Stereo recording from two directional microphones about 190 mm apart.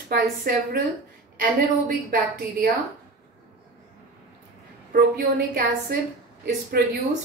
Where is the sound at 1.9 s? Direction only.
50° right (ahead or behind).